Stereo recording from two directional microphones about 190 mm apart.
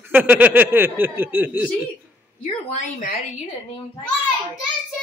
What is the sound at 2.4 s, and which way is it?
Speech, 35° left (ahead or behind).